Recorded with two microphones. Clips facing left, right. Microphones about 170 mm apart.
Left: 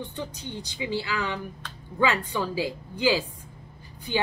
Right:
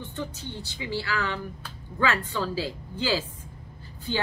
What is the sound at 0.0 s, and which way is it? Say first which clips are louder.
Speech: even; 15° left (ahead or behind).